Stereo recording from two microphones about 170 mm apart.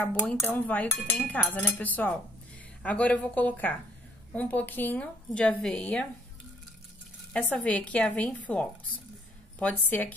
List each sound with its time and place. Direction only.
0.0 s a woman's voice: 5° left (ahead or behind)
7.3 s a woman's voice: 5° left (ahead or behind)